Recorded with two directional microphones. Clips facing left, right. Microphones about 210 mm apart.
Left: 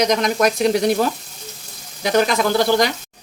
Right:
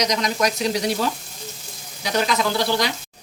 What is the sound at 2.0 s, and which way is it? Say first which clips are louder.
Speech: left 5 dB; 50° left (ahead or behind).